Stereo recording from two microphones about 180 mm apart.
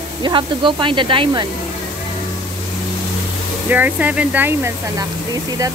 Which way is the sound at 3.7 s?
10° right (ahead or behind).